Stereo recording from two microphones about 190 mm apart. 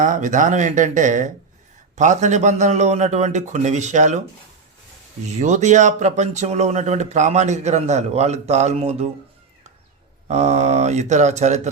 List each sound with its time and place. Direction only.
0.0 s speech: 40° right (ahead or behind)
5.2 s speech: 40° right (ahead or behind)
10.2 s speech: 35° right (ahead or behind)